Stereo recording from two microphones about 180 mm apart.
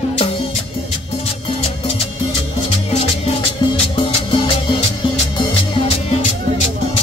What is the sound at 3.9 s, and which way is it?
Music, 30° left (ahead or behind).